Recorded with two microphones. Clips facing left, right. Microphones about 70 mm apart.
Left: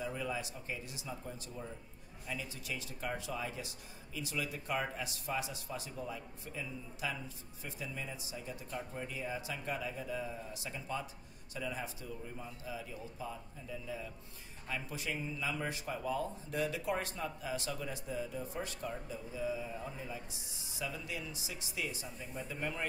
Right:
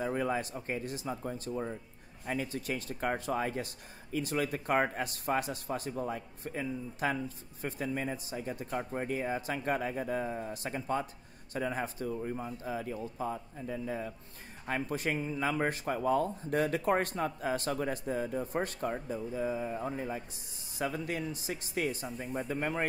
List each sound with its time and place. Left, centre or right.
0.0 s speech: right